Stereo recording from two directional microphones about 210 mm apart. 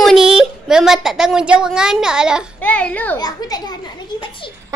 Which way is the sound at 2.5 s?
5° left (ahead or behind).